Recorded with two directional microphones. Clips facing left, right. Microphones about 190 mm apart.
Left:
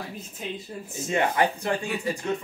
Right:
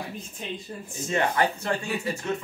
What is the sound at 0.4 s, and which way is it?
Speech, 5° left (ahead or behind).